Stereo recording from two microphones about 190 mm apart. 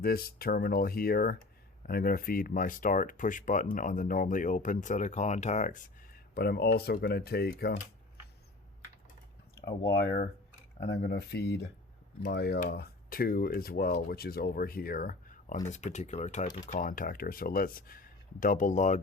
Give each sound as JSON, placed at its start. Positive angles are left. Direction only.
{"t": 0.0, "sound": "speech", "side_deg": 50}
{"t": 9.6, "sound": "speech", "side_deg": 15}
{"t": 9.9, "sound": "speech", "side_deg": 55}